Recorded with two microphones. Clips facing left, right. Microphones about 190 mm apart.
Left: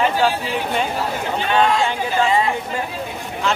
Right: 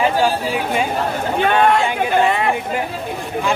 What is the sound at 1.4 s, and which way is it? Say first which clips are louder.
Speech: right 3 dB; 60° right (ahead or behind).